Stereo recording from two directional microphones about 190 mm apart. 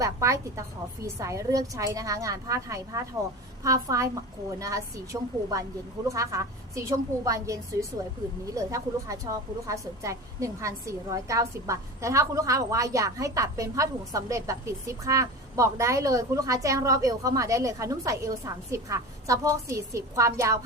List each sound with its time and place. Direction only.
0.0 s a woman's voice: 15° right (ahead or behind)